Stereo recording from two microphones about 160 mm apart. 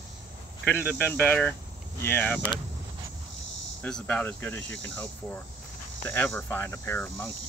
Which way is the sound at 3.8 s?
5° left (ahead or behind).